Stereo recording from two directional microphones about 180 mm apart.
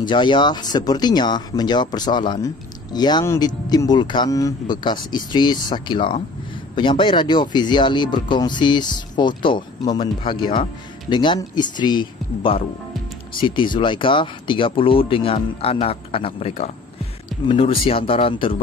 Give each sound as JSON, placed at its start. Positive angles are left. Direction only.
{"t": 0.0, "sound": "speech", "side_deg": 25}